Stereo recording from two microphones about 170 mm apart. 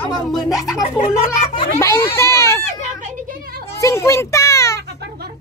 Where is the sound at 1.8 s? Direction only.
15° left (ahead or behind).